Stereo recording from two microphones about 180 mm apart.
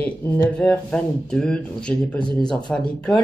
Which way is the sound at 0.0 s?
5° left (ahead or behind).